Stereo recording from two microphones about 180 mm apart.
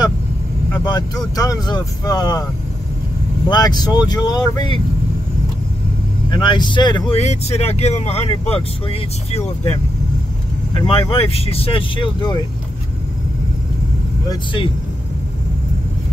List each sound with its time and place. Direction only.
1.3 s speech: 20° left (ahead or behind)
3.4 s speech: 25° left (ahead or behind)
6.3 s speech: 25° left (ahead or behind)
10.7 s speech: 30° left (ahead or behind)
14.3 s speech: 30° left (ahead or behind)